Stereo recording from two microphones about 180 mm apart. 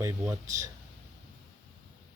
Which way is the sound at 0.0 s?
15° right (ahead or behind).